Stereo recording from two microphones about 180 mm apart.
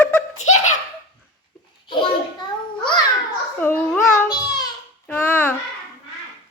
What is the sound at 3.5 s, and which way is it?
Speech, 10° left (ahead or behind).